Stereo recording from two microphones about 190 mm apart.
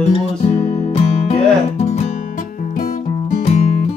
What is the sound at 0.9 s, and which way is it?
Music, 35° left (ahead or behind).